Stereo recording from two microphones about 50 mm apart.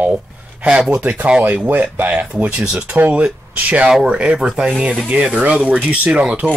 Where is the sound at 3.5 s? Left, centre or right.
Right.